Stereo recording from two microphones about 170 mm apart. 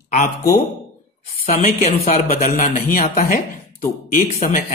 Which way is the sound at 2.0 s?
60° left (ahead or behind).